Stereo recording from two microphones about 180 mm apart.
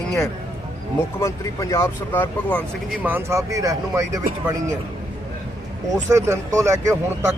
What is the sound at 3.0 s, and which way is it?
Speech, 10° right (ahead or behind).